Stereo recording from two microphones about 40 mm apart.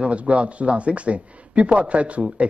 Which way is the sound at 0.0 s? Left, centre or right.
Right.